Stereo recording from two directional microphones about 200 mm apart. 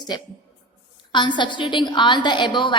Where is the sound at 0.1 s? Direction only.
20° left (ahead or behind).